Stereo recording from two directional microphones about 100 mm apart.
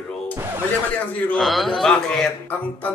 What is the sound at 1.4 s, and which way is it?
Speech, centre (ahead or behind).